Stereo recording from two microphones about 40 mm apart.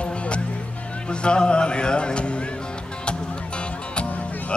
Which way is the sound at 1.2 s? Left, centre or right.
Left.